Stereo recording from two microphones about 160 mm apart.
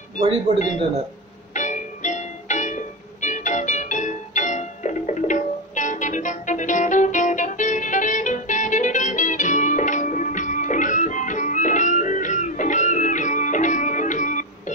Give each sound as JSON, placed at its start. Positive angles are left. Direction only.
{"t": 0.6, "sound": "speech", "side_deg": 50}
{"t": 1.5, "sound": "music", "side_deg": 50}